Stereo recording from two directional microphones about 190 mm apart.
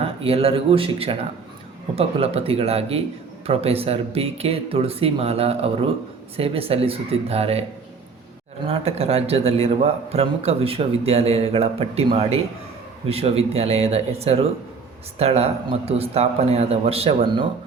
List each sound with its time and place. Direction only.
0.0 s a man's voice: 30° right (ahead or behind)
8.6 s a man's voice: 30° right (ahead or behind)